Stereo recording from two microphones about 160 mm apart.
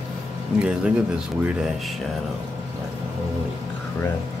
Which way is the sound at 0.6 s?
5° right (ahead or behind).